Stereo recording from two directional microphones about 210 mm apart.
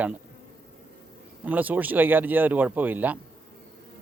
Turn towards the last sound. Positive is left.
turn(degrees=-10)  # may be behind; listen again after turning